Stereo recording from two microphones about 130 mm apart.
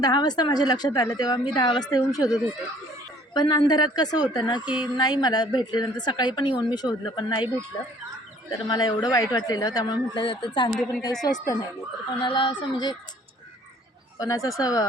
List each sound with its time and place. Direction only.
0.0 s a woman's voice: 30° left (ahead or behind)
3.3 s a woman's voice: 35° left (ahead or behind)
10.7 s a woman's voice: centre (ahead or behind)
11.2 s a woman's voice: 30° left (ahead or behind)
14.2 s speech: 25° left (ahead or behind)